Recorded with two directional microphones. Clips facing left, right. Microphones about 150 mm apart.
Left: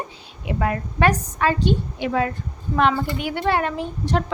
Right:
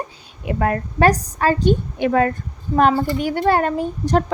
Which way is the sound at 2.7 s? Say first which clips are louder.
Right 4 dB; 40° right (ahead or behind).